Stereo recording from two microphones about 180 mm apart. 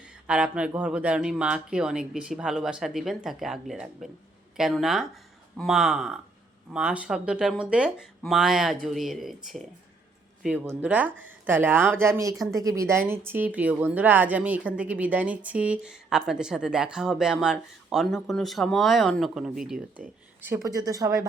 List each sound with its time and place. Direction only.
0.0 s a sound: 5° right (ahead or behind)
0.7 s a woman's voice: 5° right (ahead or behind)
20.4 s speech: 15° right (ahead or behind)